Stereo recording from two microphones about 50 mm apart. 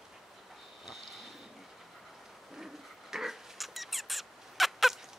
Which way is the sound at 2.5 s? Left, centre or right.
Centre.